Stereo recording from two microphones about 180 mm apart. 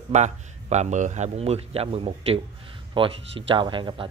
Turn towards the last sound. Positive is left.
turn(degrees=-25)  # may be behind; listen again after turning